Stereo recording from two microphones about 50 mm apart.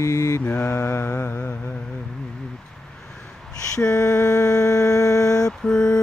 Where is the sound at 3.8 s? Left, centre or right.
Centre.